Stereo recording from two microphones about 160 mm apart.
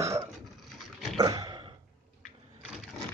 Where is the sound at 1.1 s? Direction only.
25° right (ahead or behind).